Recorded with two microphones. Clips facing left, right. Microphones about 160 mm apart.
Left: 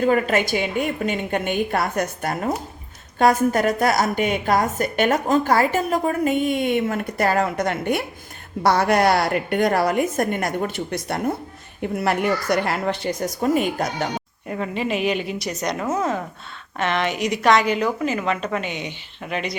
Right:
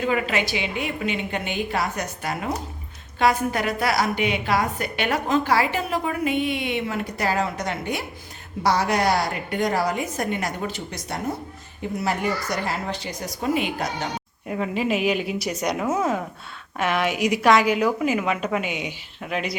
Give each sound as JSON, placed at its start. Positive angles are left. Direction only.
{"t": 0.0, "sound": "a woman's voice", "side_deg": 45}
{"t": 14.4, "sound": "a woman's voice", "side_deg": 0}